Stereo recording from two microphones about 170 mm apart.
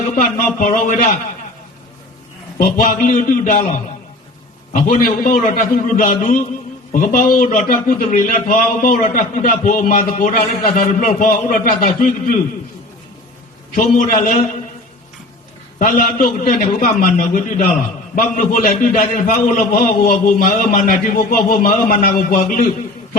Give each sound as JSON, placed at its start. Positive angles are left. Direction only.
{"t": 0.6, "sound": "a man's voice", "side_deg": 50}
{"t": 2.6, "sound": "a man's voice", "side_deg": 55}
{"t": 13.7, "sound": "a man's voice", "side_deg": 50}
{"t": 15.8, "sound": "a man's voice", "side_deg": 55}